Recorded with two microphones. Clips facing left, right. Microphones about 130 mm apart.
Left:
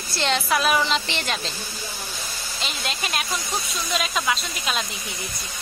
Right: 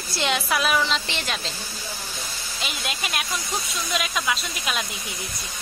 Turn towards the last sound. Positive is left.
turn(degrees=0)  # may be behind; listen again after turning